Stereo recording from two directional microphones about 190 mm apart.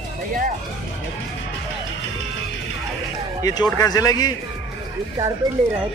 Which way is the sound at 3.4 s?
20° left (ahead or behind).